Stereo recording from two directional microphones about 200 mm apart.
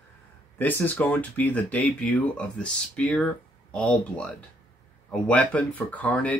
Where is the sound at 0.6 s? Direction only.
10° left (ahead or behind).